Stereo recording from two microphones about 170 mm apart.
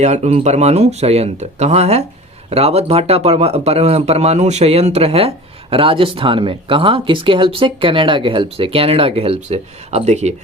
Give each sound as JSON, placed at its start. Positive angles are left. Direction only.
{"t": 0.0, "sound": "speech", "side_deg": -40}